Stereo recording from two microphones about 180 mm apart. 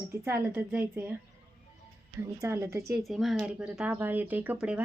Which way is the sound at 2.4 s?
15° right (ahead or behind).